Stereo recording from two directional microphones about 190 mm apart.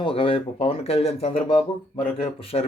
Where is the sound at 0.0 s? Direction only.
30° left (ahead or behind).